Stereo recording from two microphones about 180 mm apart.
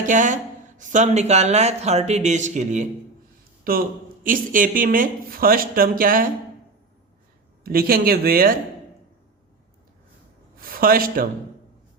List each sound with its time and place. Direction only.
0.0 s speech: 45° right (ahead or behind)
3.6 s speech: 55° right (ahead or behind)
7.6 s speech: 55° right (ahead or behind)
10.6 s a man's voice: 55° right (ahead or behind)